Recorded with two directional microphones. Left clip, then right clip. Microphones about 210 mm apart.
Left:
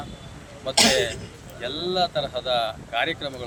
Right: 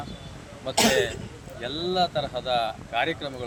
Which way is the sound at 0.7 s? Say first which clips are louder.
Left 3 dB; 30° left (ahead or behind).